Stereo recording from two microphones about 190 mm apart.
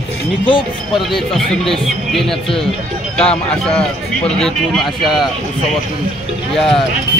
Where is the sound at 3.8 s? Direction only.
5° left (ahead or behind).